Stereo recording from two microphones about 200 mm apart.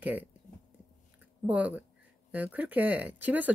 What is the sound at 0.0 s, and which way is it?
Speech, 10° right (ahead or behind).